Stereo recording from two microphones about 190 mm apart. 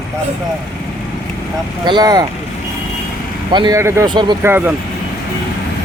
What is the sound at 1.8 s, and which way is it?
Speech, 20° right (ahead or behind).